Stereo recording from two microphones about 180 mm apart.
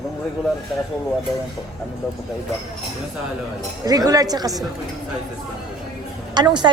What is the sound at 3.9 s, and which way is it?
Speech, 20° right (ahead or behind).